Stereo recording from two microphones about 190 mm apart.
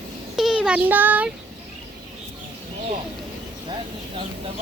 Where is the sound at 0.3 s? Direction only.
Centre (ahead or behind).